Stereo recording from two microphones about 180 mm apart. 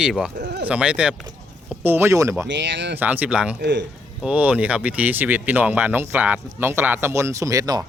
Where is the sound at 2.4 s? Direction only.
80° right.